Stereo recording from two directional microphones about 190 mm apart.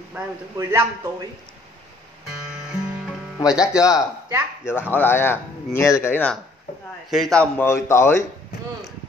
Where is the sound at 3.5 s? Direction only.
20° left (ahead or behind); by 7.4 s centre (ahead or behind).